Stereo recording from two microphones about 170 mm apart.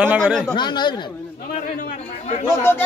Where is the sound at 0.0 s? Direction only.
5° right (ahead or behind).